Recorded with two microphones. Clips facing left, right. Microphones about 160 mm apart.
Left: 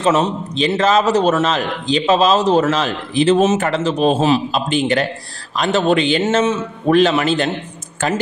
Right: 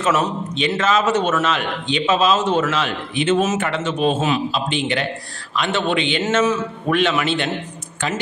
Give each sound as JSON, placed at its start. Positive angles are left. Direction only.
{"t": 0.0, "sound": "a man's voice", "side_deg": 30}